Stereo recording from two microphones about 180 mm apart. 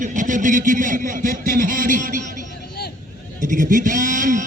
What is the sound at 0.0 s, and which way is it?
Speech, 45° right (ahead or behind).